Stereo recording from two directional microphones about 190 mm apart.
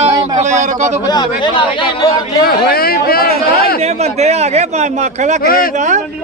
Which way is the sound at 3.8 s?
35° right (ahead or behind).